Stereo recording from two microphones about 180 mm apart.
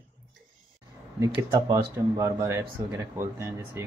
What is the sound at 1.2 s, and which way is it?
Speech, 15° right (ahead or behind).